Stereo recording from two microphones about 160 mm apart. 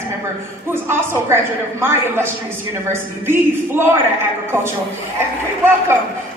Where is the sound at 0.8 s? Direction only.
15° right (ahead or behind).